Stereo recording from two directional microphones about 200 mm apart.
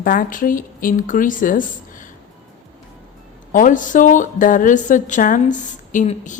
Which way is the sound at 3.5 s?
40° left (ahead or behind).